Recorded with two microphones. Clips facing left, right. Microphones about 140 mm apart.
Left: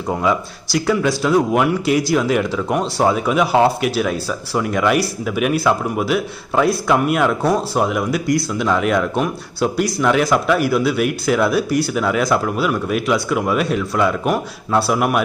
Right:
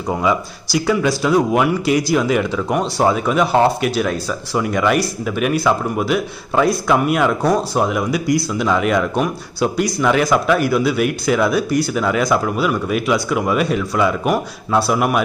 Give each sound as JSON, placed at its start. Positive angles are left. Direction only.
{"t": 0.1, "sound": "speech", "side_deg": 0}